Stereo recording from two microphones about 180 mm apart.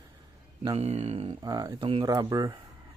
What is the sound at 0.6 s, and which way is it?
Speech, 35° right (ahead or behind).